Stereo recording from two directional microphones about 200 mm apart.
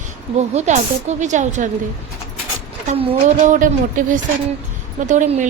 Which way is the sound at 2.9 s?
30° right (ahead or behind).